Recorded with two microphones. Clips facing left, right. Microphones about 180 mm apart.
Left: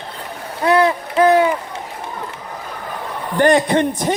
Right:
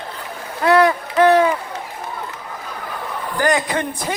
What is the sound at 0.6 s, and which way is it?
Splash, 25° left (ahead or behind).